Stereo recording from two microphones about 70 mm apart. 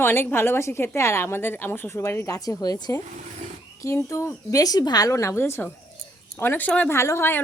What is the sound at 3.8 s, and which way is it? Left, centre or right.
Speech, left.